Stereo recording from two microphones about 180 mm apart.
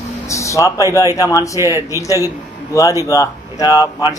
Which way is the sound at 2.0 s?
20° left (ahead or behind).